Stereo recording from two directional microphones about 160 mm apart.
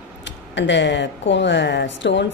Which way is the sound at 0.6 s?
90° left.